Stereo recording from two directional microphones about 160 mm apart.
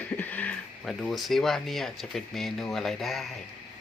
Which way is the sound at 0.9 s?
Centre (ahead or behind).